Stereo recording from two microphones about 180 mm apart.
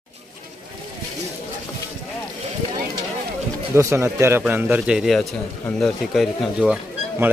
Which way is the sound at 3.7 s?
15° right (ahead or behind).